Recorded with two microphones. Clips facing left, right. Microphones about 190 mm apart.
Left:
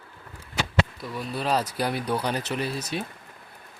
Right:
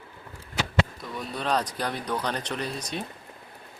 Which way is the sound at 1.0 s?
Centre (ahead or behind).